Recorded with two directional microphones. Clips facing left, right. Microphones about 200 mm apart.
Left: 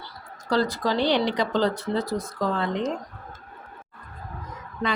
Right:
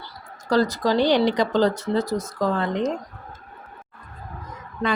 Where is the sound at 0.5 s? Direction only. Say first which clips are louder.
Right 4 dB; 40° right (ahead or behind).